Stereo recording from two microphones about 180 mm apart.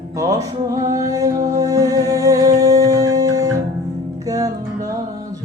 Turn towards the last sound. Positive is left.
turn(degrees=-20)  # may be behind; listen again after turning